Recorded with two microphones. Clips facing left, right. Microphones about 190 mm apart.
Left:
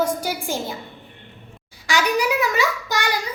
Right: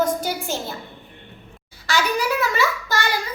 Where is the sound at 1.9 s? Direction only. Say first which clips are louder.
Left 1 dB; 15° left (ahead or behind).